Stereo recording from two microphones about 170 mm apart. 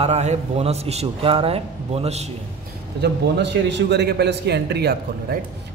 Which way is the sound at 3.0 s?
90° right.